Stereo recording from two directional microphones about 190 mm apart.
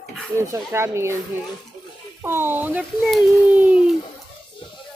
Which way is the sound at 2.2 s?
10° right (ahead or behind).